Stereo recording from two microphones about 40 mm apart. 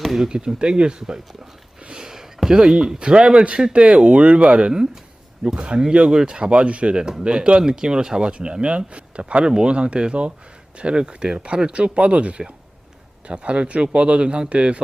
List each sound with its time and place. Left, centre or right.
0.2 s speech: centre
1.8 s a sound: right
3.0 s speech: right
5.4 s speech: centre
6.1 s a man's voice: centre